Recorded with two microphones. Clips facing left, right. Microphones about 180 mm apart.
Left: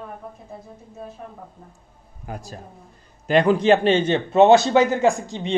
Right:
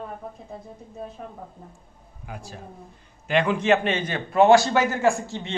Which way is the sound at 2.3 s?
40° left (ahead or behind).